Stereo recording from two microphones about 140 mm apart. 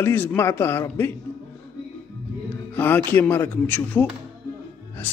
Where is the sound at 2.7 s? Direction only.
15° left (ahead or behind).